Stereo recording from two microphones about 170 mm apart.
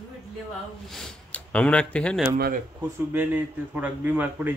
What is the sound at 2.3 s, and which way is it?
Speech, 65° right (ahead or behind).